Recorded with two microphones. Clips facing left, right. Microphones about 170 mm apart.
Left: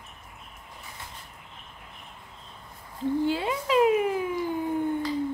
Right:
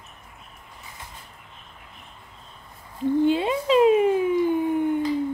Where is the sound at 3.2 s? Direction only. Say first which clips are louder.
Right 6 dB; 20° right (ahead or behind).